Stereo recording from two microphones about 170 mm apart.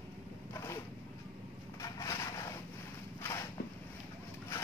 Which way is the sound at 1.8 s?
20° left (ahead or behind).